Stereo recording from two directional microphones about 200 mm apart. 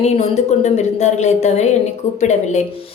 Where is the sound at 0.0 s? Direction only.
35° left (ahead or behind).